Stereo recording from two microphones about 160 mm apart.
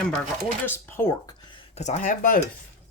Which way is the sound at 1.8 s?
50° left (ahead or behind).